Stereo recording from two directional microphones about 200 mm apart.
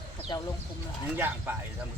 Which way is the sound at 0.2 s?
25° left (ahead or behind).